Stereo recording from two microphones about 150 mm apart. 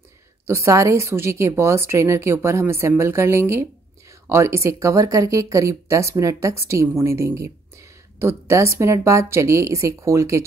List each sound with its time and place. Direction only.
0.5 s a woman's voice: 20° right (ahead or behind)